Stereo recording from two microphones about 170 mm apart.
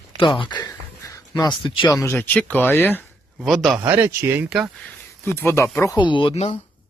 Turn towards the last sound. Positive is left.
turn(degrees=30)  # may be behind; listen again after turning